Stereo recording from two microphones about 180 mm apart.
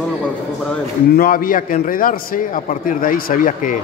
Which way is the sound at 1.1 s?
55° left (ahead or behind).